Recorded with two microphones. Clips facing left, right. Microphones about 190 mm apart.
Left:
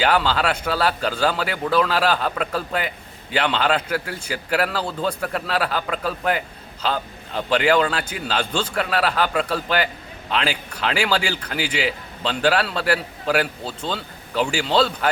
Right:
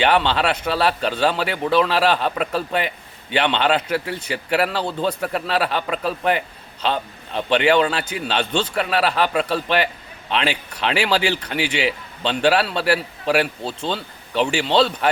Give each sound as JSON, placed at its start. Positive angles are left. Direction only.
{"t": 0.0, "sound": "a man's voice", "side_deg": 0}
{"t": 4.8, "sound": "a man's voice", "side_deg": -25}
{"t": 5.2, "sound": "a man's voice", "side_deg": 0}